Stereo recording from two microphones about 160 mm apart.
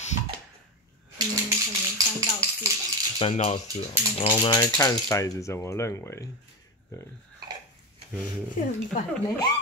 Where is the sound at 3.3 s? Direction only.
45° left (ahead or behind).